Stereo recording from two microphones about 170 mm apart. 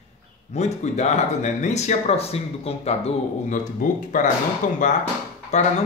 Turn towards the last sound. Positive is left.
turn(degrees=45)  # may be behind; listen again after turning